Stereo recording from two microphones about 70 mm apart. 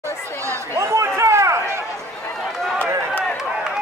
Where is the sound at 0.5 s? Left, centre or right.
Right.